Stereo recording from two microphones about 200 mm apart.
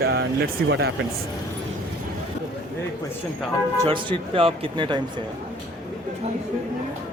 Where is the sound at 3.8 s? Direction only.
25° right (ahead or behind).